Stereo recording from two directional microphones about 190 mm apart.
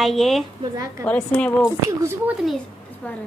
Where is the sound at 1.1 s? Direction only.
5° left (ahead or behind).